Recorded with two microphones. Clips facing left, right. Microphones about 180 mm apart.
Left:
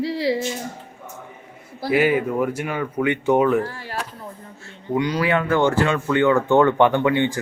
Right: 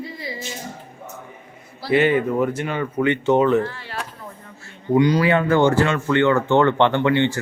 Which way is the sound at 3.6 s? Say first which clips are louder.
Right 1 dB; 40° left (ahead or behind).